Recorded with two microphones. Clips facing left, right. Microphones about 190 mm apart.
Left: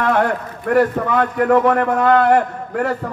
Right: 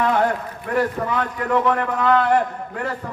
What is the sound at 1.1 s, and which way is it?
A man's voice, 50° left (ahead or behind).